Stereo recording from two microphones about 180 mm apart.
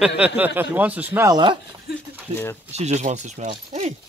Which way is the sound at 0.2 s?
10° right (ahead or behind).